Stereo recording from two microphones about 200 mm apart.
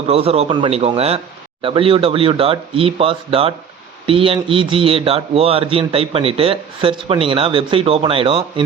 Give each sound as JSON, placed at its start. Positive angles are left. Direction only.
{"t": 0.1, "sound": "a man's voice", "side_deg": -30}